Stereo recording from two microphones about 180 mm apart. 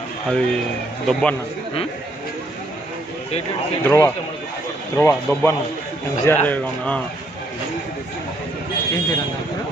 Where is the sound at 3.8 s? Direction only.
15° left (ahead or behind).